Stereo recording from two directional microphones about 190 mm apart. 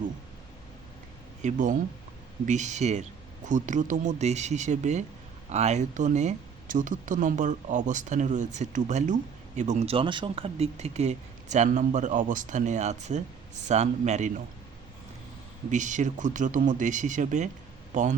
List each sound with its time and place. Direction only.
1.4 s speech: 40° right (ahead or behind)
15.7 s speech: 40° right (ahead or behind)